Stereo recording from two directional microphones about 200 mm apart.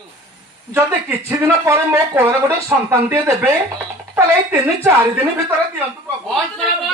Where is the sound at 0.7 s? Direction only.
10° right (ahead or behind).